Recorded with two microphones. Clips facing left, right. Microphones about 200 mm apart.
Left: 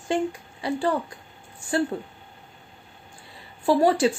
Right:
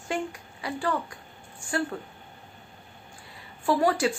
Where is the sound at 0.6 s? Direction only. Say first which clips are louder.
Left 5 dB; 25° left (ahead or behind).